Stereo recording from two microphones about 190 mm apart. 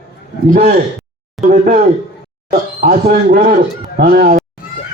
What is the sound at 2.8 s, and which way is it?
A man's voice, 50° right (ahead or behind).